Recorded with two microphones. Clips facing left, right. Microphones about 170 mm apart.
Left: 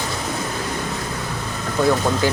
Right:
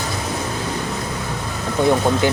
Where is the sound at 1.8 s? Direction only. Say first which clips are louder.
Right 2 dB; 20° right (ahead or behind).